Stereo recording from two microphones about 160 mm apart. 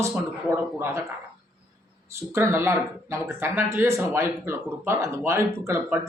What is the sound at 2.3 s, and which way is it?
Speech, 15° right (ahead or behind).